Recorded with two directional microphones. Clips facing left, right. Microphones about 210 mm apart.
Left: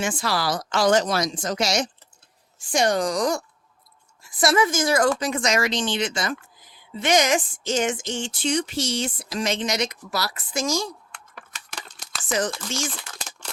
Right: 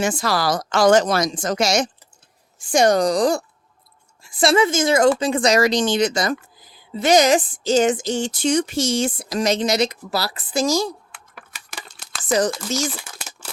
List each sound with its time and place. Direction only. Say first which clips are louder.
0.0 s speech: right 4 dB; 40° right (ahead or behind)
11.1 s typing: even; 5° right (ahead or behind)
12.5 s speech: right 6 dB; 5° right (ahead or behind)
12.9 s crumpling: right 3 dB; 5° right (ahead or behind)